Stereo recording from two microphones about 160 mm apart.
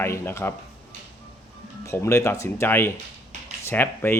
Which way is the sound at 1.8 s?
20° left (ahead or behind).